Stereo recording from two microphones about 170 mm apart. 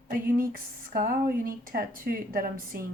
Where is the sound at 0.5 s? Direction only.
55° right (ahead or behind).